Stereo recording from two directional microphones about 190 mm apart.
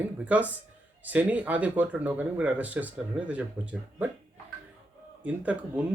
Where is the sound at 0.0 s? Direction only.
10° right (ahead or behind).